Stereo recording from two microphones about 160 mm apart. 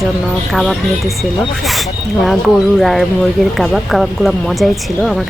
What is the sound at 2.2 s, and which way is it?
Speech, centre (ahead or behind).